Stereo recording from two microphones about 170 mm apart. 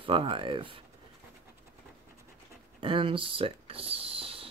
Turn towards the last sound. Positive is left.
turn(degrees=-35)  # may be behind; listen again after turning